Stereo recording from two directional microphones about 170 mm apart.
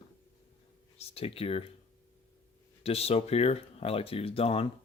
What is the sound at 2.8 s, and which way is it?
Speech, 35° left (ahead or behind).